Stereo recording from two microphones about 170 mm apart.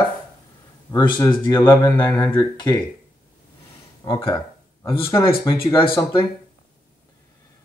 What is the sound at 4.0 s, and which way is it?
Speech, 25° left (ahead or behind).